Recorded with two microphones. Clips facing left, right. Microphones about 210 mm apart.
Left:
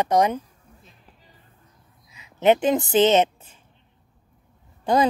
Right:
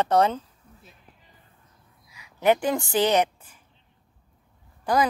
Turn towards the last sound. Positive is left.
turn(degrees=25)  # may be behind; listen again after turning